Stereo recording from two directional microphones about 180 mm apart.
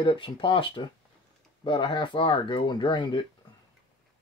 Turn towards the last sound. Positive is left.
turn(degrees=25)  # may be behind; listen again after turning